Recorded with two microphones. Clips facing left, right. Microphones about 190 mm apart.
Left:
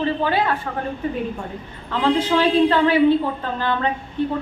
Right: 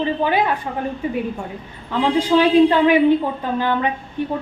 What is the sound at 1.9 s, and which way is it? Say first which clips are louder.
A woman's voice: right 2 dB; 15° right (ahead or behind).